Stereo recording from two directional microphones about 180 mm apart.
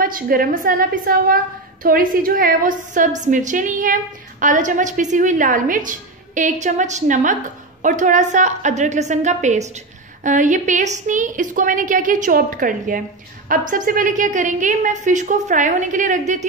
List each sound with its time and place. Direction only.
0.0 s a woman's voice: 50° right (ahead or behind)